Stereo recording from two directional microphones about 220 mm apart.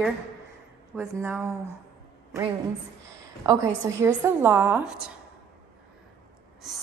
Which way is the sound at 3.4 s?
15° right (ahead or behind).